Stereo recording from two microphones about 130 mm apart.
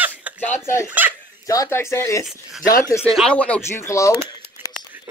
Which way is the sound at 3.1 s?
5° left (ahead or behind).